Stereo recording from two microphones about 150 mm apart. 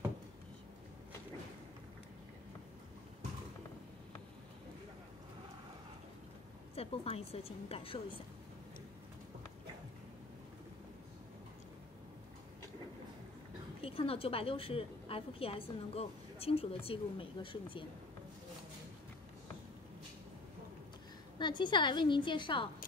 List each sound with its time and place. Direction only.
6.7 s a woman's voice: 40° left (ahead or behind)
13.7 s a woman's voice: 40° left (ahead or behind)
21.4 s a woman's voice: 30° left (ahead or behind)